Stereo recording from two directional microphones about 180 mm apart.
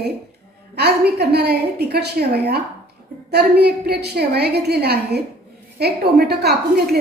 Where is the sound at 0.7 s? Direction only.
65° right (ahead or behind).